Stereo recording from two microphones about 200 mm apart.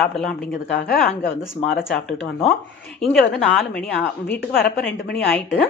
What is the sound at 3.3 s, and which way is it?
A woman's voice, centre (ahead or behind).